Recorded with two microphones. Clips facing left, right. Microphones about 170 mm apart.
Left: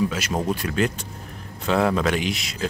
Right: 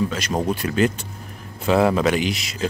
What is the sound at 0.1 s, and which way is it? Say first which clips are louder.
Speech: right 2 dB; 5° left (ahead or behind).